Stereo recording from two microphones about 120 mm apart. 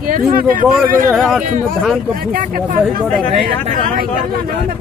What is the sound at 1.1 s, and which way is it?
Speech, centre (ahead or behind).